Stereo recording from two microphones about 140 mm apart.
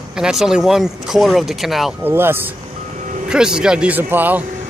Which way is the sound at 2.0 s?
15° right (ahead or behind).